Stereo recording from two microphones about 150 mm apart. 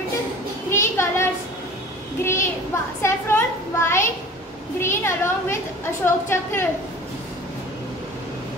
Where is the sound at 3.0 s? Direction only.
15° left (ahead or behind).